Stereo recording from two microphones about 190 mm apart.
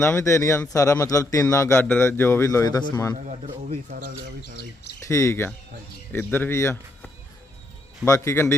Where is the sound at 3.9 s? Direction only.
50° right (ahead or behind).